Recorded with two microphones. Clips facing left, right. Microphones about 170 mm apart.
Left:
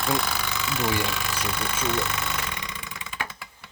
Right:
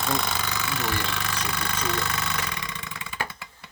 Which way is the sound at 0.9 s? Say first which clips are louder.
Left 2 dB; 10° left (ahead or behind).